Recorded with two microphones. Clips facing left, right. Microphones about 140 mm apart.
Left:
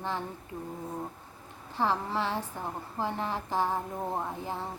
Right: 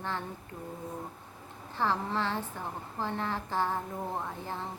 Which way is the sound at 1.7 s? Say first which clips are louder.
Left 1 dB; 15° left (ahead or behind).